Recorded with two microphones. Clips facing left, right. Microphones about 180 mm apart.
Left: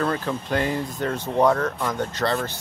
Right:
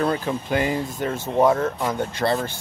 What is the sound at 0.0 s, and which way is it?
Speech, 15° right (ahead or behind).